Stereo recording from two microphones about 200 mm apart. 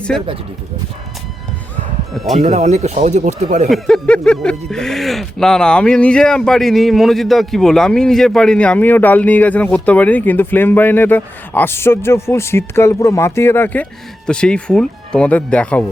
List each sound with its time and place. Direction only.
2.1 s speech: centre (ahead or behind)
2.5 s speech: 35° right (ahead or behind)
3.7 s speech: 5° left (ahead or behind)